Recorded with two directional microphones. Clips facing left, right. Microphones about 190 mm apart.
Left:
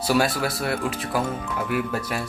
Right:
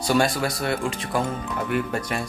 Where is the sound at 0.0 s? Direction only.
5° left (ahead or behind).